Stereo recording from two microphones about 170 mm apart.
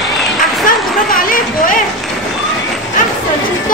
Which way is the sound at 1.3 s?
50° left (ahead or behind).